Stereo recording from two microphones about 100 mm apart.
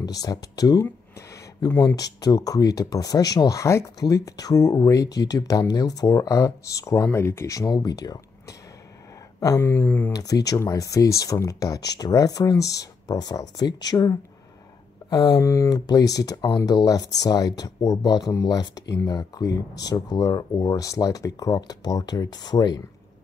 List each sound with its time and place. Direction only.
0.0 s speech: 40° left (ahead or behind)
0.8 s a sound: 25° left (ahead or behind)
1.6 s speech: 40° left (ahead or behind)
9.6 s speech: 25° left (ahead or behind)
10.1 s speech: 40° left (ahead or behind)